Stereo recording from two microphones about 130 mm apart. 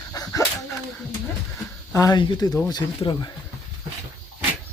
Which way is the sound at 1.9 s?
30° left (ahead or behind).